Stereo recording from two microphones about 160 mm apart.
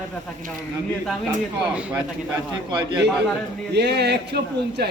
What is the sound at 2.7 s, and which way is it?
Speech, 30° right (ahead or behind).